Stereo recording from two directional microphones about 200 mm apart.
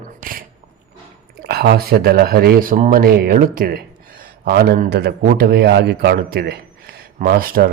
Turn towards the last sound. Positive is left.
turn(degrees=-50)  # may be behind; listen again after turning